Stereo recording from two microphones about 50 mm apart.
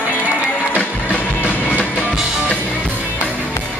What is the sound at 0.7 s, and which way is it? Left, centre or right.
Music, left.